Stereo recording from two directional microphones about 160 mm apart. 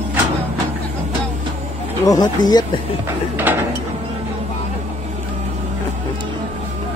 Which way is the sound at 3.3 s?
10° right (ahead or behind).